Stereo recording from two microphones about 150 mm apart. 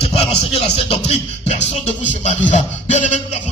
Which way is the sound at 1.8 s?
50° left (ahead or behind).